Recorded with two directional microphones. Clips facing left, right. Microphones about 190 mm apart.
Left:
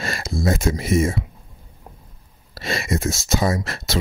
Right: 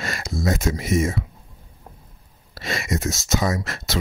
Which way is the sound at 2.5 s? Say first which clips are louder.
Left 2 dB; 30° left (ahead or behind).